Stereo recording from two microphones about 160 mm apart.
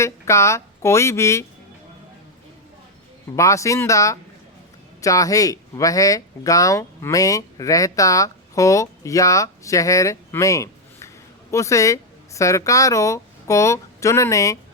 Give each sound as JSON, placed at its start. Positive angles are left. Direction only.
{"t": 0.0, "sound": "speech", "side_deg": 20}
{"t": 3.3, "sound": "speech", "side_deg": 20}